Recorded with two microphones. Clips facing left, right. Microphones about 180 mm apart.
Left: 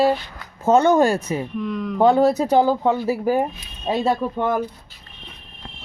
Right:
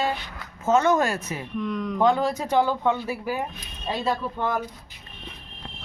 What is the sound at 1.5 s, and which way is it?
Speech, 5° left (ahead or behind).